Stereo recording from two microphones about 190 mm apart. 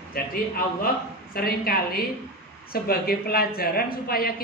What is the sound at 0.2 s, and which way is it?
A woman's voice, 50° left (ahead or behind).